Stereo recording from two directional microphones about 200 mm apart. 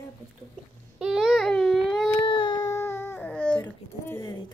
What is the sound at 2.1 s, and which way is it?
Baby cry, 25° left (ahead or behind).